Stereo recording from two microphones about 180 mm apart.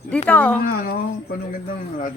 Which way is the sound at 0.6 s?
60° left (ahead or behind).